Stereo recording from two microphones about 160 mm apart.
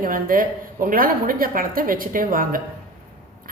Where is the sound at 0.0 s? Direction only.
60° right (ahead or behind).